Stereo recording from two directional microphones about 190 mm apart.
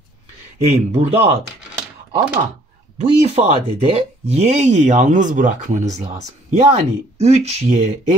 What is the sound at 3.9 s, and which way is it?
Speech, 35° right (ahead or behind).